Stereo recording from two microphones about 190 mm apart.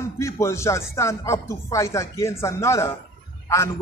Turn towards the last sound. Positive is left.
turn(degrees=15)  # may be behind; listen again after turning